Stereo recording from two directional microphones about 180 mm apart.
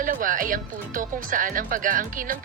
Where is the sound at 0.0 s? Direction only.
50° right (ahead or behind).